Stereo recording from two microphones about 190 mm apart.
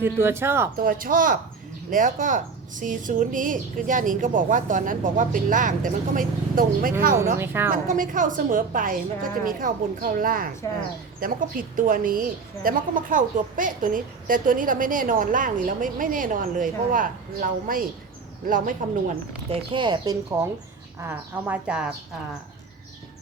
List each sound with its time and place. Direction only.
0.0 s speech: 15° right (ahead or behind)
0.8 s a woman's voice: 50° right (ahead or behind)
7.3 s speech: 10° right (ahead or behind)
7.7 s a woman's voice: 45° right (ahead or behind)
19.5 s speech: 25° right (ahead or behind); by 21.9 s 5° right (ahead or behind)